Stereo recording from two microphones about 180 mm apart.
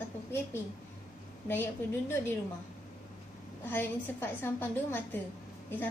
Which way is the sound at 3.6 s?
10° left (ahead or behind).